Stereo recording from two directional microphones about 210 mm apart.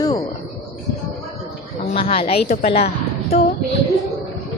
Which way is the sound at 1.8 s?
30° left (ahead or behind).